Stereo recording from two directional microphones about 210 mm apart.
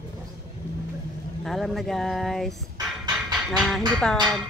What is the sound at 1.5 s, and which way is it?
Speech, centre (ahead or behind).